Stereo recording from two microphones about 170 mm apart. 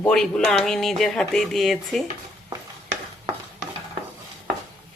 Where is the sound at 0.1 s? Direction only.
5° left (ahead or behind).